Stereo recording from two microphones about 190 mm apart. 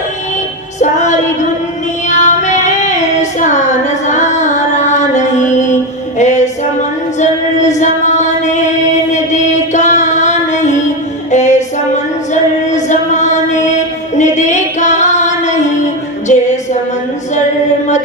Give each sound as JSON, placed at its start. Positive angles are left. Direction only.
{"t": 0.8, "sound": "music", "side_deg": 40}
{"t": 2.0, "sound": "child singing", "side_deg": 40}
{"t": 6.1, "sound": "music", "side_deg": 40}
{"t": 14.2, "sound": "female singing", "side_deg": 40}